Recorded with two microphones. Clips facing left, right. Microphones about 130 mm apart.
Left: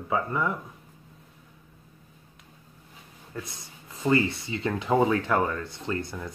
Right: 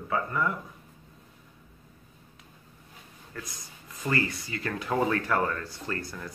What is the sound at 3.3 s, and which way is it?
Speech, 25° left (ahead or behind).